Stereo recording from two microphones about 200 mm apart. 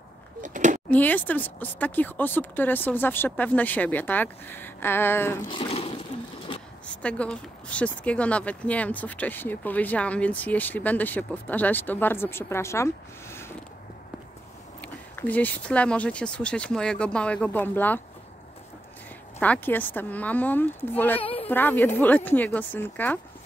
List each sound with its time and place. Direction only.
0.4 s a sound: 40° right (ahead or behind)
0.8 s speech: 10° left (ahead or behind)
5.5 s speech: 30° left (ahead or behind)
6.5 s a sound: 25° left (ahead or behind)
7.0 s speech: 5° left (ahead or behind)
14.8 s speech: 5° left (ahead or behind)
19.4 s speech: 10° left (ahead or behind)
21.2 s a sound: 25° left (ahead or behind)
21.5 s speech: 10° left (ahead or behind)